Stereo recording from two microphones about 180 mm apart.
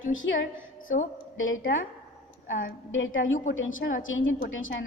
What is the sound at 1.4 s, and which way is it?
Speech, 90° left.